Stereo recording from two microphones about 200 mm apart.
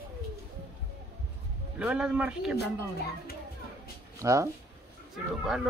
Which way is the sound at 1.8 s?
5° right (ahead or behind).